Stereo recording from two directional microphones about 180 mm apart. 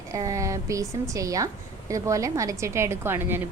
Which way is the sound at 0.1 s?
20° right (ahead or behind).